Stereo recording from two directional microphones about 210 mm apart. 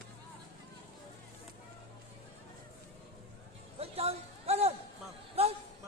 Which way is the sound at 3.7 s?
30° right (ahead or behind).